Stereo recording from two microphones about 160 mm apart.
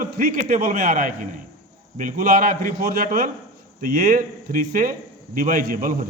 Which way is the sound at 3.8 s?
50° right (ahead or behind).